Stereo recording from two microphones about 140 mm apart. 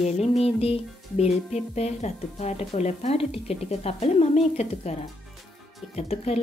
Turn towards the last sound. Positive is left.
turn(degrees=45)  # may be behind; listen again after turning